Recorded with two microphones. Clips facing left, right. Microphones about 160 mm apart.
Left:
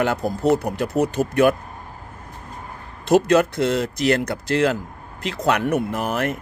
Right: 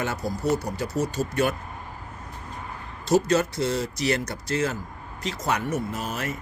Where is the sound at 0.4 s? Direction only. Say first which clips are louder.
Left 7 dB; 60° left (ahead or behind).